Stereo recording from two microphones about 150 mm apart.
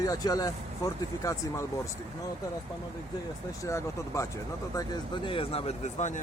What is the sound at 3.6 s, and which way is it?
Speech, 20° left (ahead or behind).